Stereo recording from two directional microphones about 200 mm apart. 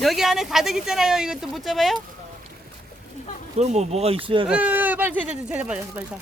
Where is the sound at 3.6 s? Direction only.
35° right (ahead or behind).